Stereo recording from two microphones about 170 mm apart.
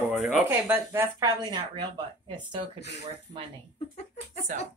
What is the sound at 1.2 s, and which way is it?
Speech, 25° right (ahead or behind).